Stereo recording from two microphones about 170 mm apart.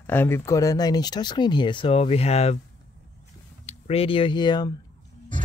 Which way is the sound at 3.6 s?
35° left (ahead or behind).